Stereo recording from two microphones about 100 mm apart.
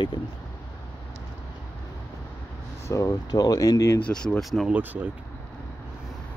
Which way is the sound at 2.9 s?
35° left (ahead or behind).